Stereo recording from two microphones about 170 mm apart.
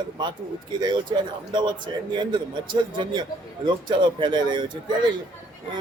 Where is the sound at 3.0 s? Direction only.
25° right (ahead or behind).